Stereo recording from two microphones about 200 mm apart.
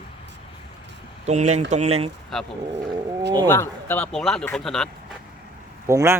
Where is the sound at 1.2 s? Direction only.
35° right (ahead or behind).